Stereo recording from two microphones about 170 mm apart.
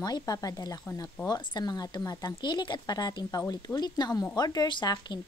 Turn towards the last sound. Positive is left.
turn(degrees=25)  # may be behind; listen again after turning